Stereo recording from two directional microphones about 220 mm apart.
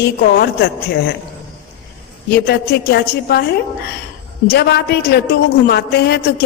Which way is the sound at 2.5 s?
50° left (ahead or behind).